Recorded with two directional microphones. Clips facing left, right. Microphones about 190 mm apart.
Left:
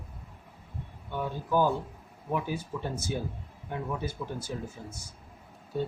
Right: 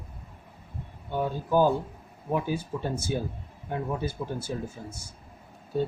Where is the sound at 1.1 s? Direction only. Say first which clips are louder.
Right 4 dB; 35° right (ahead or behind).